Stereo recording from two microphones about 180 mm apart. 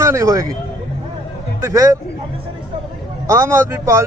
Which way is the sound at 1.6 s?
15° right (ahead or behind).